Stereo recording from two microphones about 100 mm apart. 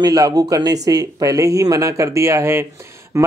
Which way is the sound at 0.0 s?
40° right (ahead or behind).